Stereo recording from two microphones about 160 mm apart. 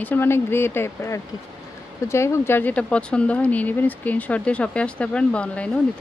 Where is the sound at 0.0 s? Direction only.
10° left (ahead or behind).